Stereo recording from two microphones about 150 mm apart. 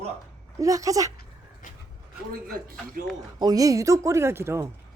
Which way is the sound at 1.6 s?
65° left (ahead or behind).